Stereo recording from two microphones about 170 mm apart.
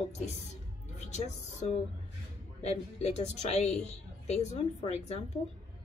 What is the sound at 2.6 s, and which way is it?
A woman's voice, 40° left (ahead or behind).